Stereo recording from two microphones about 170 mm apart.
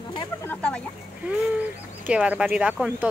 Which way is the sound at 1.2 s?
5° right (ahead or behind).